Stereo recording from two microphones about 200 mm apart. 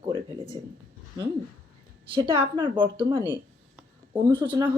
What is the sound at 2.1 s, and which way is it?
Speech, 25° right (ahead or behind).